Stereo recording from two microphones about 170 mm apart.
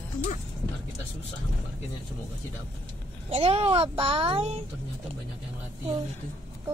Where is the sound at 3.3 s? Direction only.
35° right (ahead or behind).